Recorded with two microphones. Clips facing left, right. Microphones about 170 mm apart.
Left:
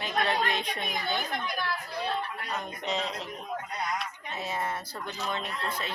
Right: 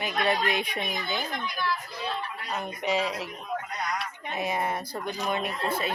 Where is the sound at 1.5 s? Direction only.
55° left (ahead or behind).